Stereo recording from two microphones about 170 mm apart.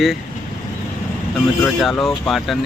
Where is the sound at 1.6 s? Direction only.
Centre (ahead or behind).